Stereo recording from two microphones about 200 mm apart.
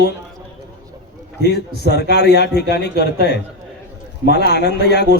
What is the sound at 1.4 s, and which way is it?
Speech, 55° left (ahead or behind).